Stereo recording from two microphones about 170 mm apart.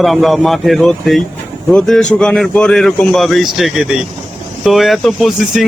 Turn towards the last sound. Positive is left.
turn(degrees=0)  # may be behind; listen again after turning